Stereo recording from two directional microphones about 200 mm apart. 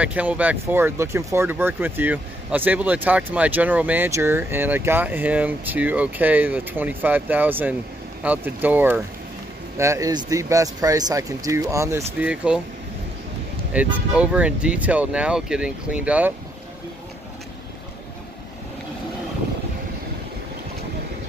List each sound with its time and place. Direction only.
0.0 s speech: 5° right (ahead or behind)
13.7 s speech: 5° right (ahead or behind)